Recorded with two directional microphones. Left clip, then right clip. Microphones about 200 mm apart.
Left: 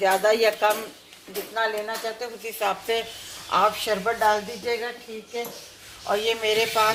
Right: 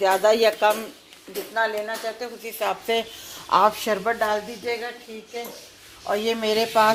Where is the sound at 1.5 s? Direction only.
50° right (ahead or behind).